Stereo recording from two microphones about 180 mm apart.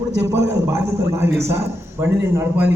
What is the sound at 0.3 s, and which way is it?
A man's voice, 15° right (ahead or behind).